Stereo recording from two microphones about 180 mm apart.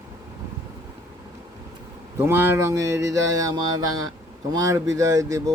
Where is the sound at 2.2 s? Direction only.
15° right (ahead or behind).